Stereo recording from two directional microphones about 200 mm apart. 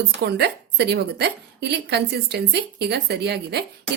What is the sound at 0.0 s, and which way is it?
A woman's voice, 55° right (ahead or behind).